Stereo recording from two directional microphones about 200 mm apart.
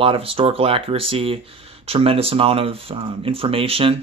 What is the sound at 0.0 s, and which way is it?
Speech, 25° right (ahead or behind).